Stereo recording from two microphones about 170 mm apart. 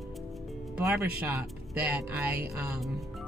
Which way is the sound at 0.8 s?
10° right (ahead or behind).